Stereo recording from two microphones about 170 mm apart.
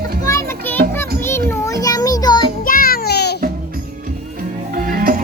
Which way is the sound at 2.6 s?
60° left (ahead or behind).